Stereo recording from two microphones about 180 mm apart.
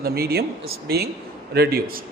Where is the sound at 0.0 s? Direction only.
60° right (ahead or behind).